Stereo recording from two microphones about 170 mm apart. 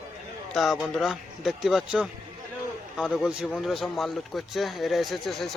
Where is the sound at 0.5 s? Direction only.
Centre (ahead or behind).